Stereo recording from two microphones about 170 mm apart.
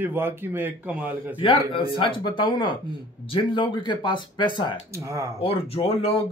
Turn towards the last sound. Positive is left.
turn(degrees=35)  # may be behind; listen again after turning